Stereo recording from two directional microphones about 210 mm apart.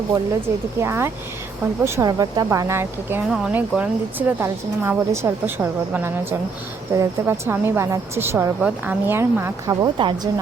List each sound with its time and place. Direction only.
0.8 s speech: 10° right (ahead or behind)